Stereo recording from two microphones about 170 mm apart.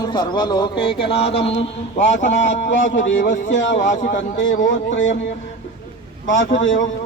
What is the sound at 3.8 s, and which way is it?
Speech, 50° left (ahead or behind).